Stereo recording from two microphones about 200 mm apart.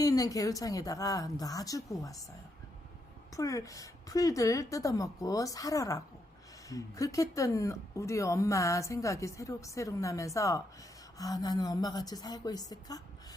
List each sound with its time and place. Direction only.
0.0 s speech: 20° left (ahead or behind)
3.3 s a woman's voice: 15° left (ahead or behind)